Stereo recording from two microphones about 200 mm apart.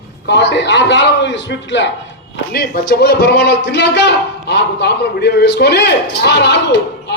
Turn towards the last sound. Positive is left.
turn(degrees=60)  # may be behind; listen again after turning